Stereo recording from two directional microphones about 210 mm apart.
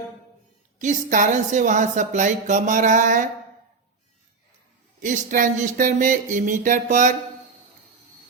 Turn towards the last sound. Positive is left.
turn(degrees=-35)  # may be behind; listen again after turning